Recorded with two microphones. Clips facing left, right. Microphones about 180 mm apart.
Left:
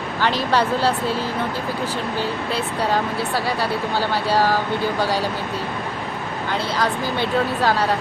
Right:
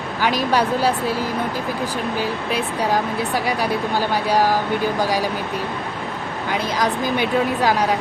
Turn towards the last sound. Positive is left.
turn(degrees=-15)  # may be behind; listen again after turning